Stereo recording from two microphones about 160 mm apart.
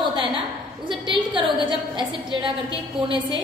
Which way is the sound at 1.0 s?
30° right (ahead or behind).